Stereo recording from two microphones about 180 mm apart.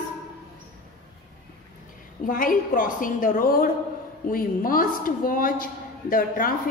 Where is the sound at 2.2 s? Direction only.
50° left (ahead or behind).